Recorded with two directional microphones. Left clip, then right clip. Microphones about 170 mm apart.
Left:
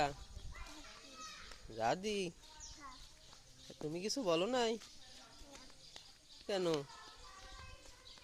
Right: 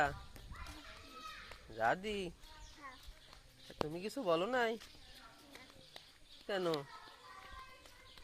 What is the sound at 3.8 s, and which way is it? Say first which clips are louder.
Speech: left 1 dB; 25° left (ahead or behind).